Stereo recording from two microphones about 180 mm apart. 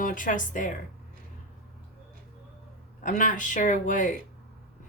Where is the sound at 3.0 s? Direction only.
45° left (ahead or behind).